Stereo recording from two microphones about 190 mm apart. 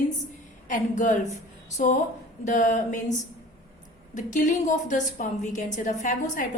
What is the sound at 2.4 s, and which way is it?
Speech, 40° left (ahead or behind).